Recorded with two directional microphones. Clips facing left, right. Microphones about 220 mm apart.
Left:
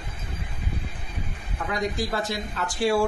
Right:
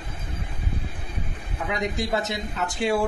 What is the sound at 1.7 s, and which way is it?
Speech, 20° right (ahead or behind).